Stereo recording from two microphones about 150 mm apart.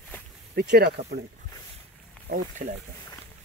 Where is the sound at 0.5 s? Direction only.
90° right.